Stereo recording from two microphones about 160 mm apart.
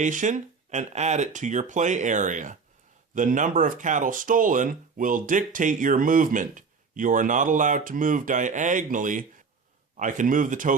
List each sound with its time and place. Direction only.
0.0 s speech: 50° right (ahead or behind)